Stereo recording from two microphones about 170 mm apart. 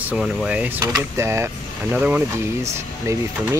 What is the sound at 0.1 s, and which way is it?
Speech, 5° right (ahead or behind).